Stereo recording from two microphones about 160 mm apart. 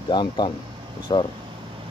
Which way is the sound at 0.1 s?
30° left (ahead or behind).